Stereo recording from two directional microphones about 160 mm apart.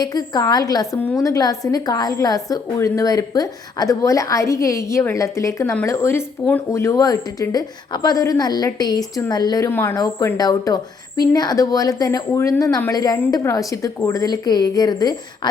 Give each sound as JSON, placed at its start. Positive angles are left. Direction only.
{"t": 0.0, "sound": "a woman's voice", "side_deg": 25}